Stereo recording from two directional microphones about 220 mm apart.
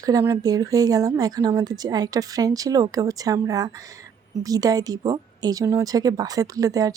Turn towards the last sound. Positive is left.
turn(degrees=-15)  # may be behind; listen again after turning